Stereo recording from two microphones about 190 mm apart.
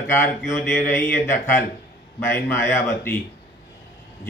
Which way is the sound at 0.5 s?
10° left (ahead or behind).